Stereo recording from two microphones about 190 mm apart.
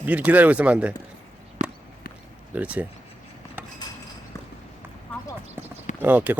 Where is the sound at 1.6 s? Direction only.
35° right (ahead or behind).